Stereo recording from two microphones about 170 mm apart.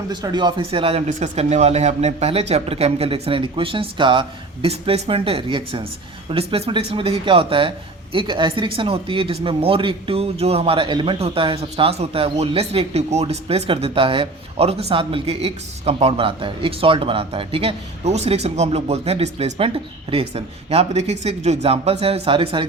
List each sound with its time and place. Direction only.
0.1 s speech: 25° right (ahead or behind)